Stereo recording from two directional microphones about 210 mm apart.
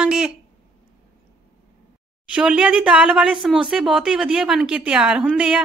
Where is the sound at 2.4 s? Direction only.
5° right (ahead or behind).